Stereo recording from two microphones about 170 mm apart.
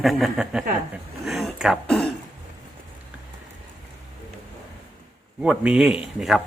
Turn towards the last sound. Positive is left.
turn(degrees=0)  # may be behind; listen again after turning